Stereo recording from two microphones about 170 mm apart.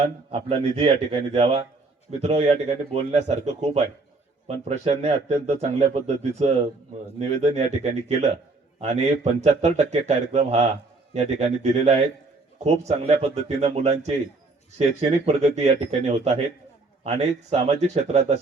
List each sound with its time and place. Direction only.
0.0 s speech: 35° right (ahead or behind)